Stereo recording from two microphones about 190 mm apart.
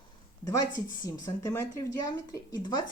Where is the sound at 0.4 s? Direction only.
20° left (ahead or behind).